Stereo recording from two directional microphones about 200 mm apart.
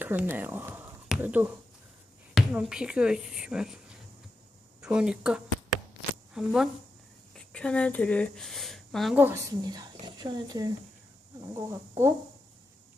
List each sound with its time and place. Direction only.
0.0 s speech: 10° right (ahead or behind)
9.6 s speech: 20° right (ahead or behind)